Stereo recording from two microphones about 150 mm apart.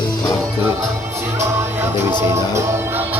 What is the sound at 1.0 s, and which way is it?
Music, 15° right (ahead or behind).